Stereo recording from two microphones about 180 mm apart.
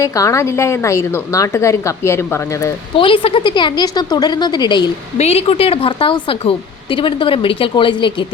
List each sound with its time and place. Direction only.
0.0 s a woman's voice: 15° left (ahead or behind)
2.9 s speech: 30° left (ahead or behind)
5.1 s a woman's voice: 35° left (ahead or behind)